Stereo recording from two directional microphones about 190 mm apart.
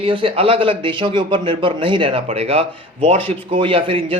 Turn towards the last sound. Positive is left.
turn(degrees=-30)  # may be behind; listen again after turning